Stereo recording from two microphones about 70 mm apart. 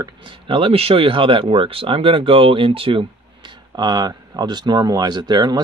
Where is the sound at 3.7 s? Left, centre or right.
Right.